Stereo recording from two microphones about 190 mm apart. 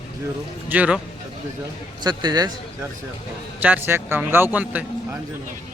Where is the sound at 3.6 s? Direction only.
10° right (ahead or behind).